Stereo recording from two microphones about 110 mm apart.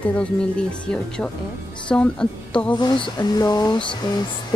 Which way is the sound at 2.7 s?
45° left (ahead or behind).